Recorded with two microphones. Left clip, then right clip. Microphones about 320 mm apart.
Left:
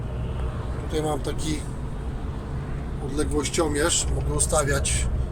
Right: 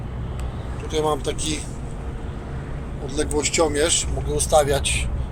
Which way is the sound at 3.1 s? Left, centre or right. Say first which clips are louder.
Right 4 dB; centre.